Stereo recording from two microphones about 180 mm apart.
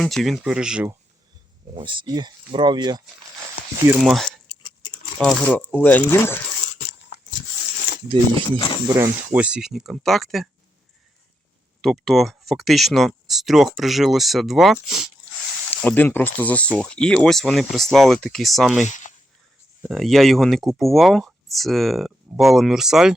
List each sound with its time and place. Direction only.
0.0 s speech: centre (ahead or behind)
1.7 s speech: 25° right (ahead or behind)
3.6 s a sound: 55° left (ahead or behind)
4.0 s speech: centre (ahead or behind)
4.4 s a sound: 25° left (ahead or behind)
5.2 s speech: 5° left (ahead or behind)
7.1 s a sound: 65° left (ahead or behind)
8.5 s speech: 25° left (ahead or behind)
9.0 s speech: 10° right (ahead or behind)
11.8 s speech: centre (ahead or behind)
15.7 s speech: 10° left (ahead or behind)
18.8 s speech: 45° left (ahead or behind)
19.8 s speech: centre (ahead or behind)